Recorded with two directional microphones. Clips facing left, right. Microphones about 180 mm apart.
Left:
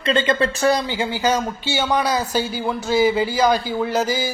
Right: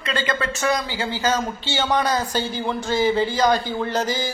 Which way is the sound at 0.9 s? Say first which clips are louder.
Left 2 dB; 15° left (ahead or behind).